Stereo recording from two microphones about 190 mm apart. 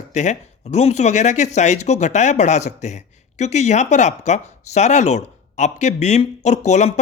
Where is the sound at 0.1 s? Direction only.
40° left (ahead or behind).